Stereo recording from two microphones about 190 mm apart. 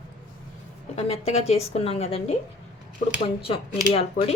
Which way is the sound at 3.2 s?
30° left (ahead or behind).